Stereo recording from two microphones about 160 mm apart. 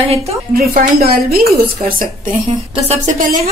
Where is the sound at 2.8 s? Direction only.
55° right (ahead or behind).